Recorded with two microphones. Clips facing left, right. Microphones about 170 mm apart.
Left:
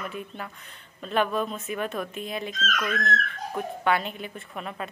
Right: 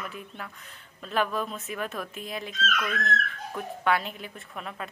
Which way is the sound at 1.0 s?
Centre (ahead or behind).